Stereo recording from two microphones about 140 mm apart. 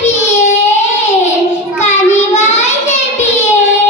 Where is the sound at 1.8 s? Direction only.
55° left (ahead or behind).